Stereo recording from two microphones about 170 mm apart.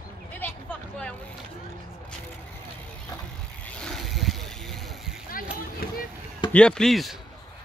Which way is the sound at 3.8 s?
5° left (ahead or behind).